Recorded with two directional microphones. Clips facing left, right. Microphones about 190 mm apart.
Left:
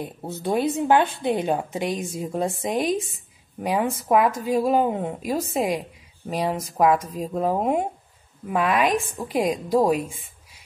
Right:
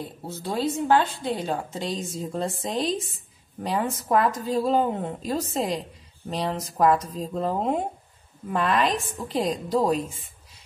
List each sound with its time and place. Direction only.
0.0 s a woman's voice: 20° left (ahead or behind)